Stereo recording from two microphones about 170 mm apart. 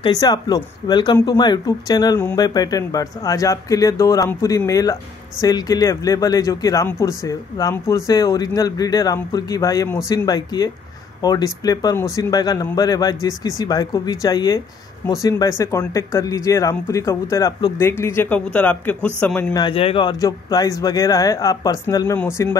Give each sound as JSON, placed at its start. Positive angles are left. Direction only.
{"t": 0.0, "sound": "speech", "side_deg": 25}
{"t": 19.5, "sound": "speech", "side_deg": 30}